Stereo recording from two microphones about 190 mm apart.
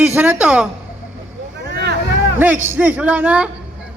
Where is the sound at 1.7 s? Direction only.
55° right (ahead or behind).